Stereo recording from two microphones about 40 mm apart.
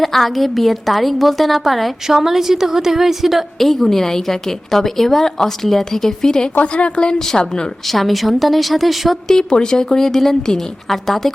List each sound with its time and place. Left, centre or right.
0.0 s a woman's voice: centre
2.0 s a woman's voice: centre
3.6 s a woman's voice: centre
6.6 s a woman's voice: left
7.9 s a woman's voice: centre
9.2 s a woman's voice: centre